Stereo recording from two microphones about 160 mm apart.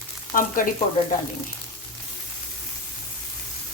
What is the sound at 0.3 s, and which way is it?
Frying, 60° left (ahead or behind).